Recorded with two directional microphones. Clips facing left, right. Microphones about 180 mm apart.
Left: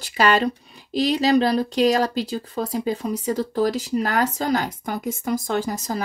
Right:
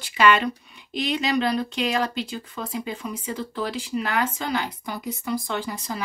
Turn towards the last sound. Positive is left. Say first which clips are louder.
# left 5 dB
turn(degrees=40)  # may be behind; listen again after turning